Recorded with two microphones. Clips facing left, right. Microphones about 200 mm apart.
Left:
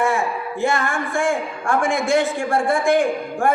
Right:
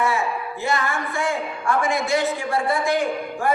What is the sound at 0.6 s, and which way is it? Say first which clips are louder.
A woman's voice: left 3 dB; 50° left (ahead or behind).